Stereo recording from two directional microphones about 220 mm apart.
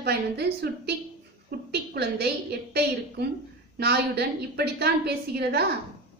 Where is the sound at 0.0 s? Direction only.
45° right (ahead or behind).